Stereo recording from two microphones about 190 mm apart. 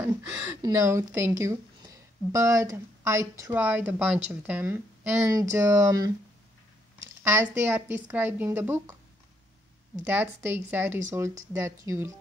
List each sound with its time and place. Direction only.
0.6 s speech: 15° right (ahead or behind)
7.2 s speech: 10° right (ahead or behind)
10.0 s speech: 10° right (ahead or behind)